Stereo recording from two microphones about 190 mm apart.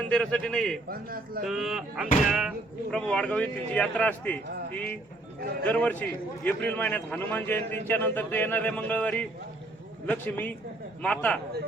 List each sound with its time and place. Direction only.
0.0 s a man's voice: 5° left (ahead or behind)
0.9 s a man's voice: 50° right (ahead or behind)
1.5 s a man's voice: centre (ahead or behind)